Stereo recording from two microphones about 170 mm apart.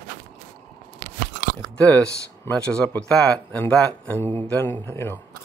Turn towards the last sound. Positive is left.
turn(degrees=10)  # may be behind; listen again after turning